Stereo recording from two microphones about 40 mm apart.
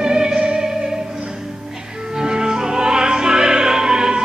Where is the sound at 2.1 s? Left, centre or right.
Centre.